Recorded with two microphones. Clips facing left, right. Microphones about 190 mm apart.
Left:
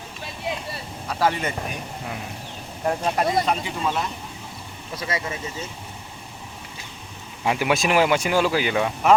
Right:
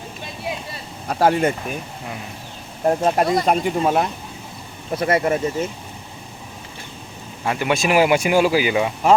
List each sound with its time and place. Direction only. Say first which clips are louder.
1.0 s speech: right 6 dB; 50° right (ahead or behind)
2.8 s speech: right 5 dB; 45° right (ahead or behind)
7.4 s speech: right 1 dB; 5° left (ahead or behind)